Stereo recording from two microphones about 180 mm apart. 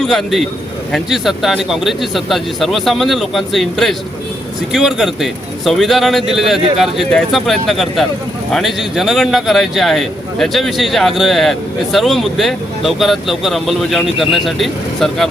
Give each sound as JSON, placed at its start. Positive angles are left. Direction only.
{"t": 0.0, "sound": "a man's voice", "side_deg": 0}